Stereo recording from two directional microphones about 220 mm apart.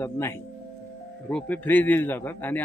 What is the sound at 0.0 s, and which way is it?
A man's voice, 10° left (ahead or behind).